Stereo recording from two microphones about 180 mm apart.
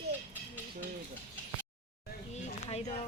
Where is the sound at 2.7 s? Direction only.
35° left (ahead or behind).